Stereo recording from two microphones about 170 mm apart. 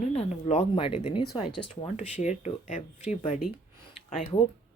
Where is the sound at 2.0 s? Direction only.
45° left (ahead or behind).